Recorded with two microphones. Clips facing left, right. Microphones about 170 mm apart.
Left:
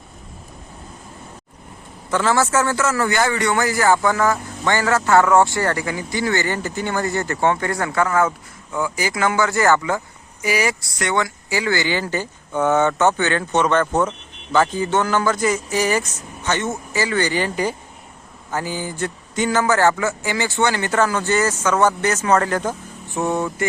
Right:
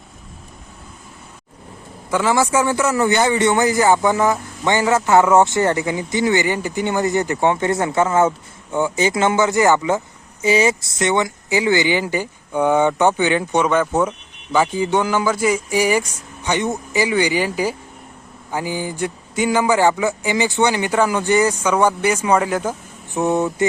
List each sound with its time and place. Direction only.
2.0 s a man's voice: 15° right (ahead or behind)